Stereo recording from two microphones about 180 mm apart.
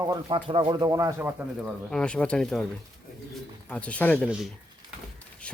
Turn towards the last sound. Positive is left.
turn(degrees=5)  # may be behind; listen again after turning